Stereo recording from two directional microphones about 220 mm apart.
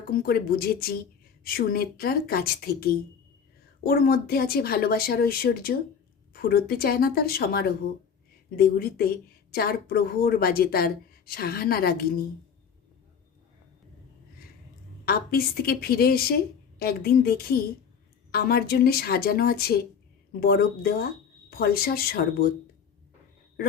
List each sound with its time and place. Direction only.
0.1 s a woman's voice: 45° left (ahead or behind)
15.0 s a woman's voice: 45° left (ahead or behind)